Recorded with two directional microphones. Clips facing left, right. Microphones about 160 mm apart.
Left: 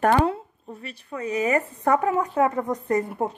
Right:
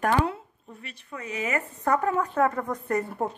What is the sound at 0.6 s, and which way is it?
Speech, 35° left (ahead or behind).